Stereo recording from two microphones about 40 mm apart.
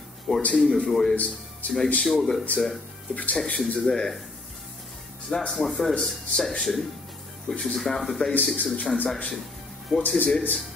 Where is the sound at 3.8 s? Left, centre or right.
Centre.